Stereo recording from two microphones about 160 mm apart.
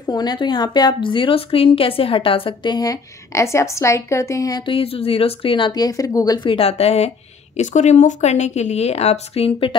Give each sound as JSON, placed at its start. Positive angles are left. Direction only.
{"t": 0.0, "sound": "a woman's voice", "side_deg": 25}